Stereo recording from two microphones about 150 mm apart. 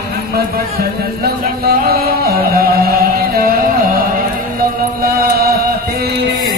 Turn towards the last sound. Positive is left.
turn(degrees=-90)